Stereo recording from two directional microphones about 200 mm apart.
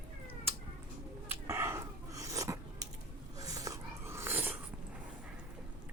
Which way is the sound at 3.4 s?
15° right (ahead or behind).